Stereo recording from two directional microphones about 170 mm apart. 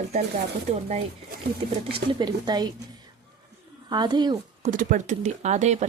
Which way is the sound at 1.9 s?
30° right (ahead or behind).